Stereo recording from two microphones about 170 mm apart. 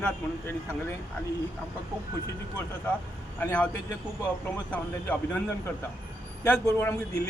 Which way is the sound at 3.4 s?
10° left (ahead or behind).